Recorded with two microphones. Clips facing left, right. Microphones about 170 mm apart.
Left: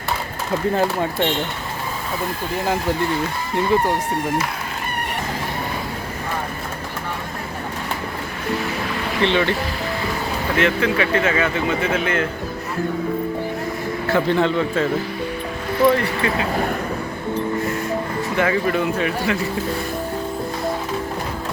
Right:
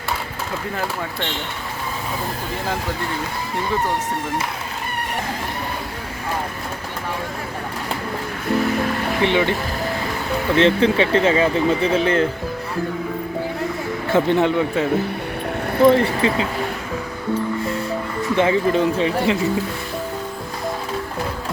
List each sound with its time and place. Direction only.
3.7 s speech: 15° left (ahead or behind)
9.2 s speech: 15° right (ahead or behind)
10.6 s speech: 30° right (ahead or behind)
14.1 s speech: 20° right (ahead or behind)
18.3 s speech: 25° right (ahead or behind)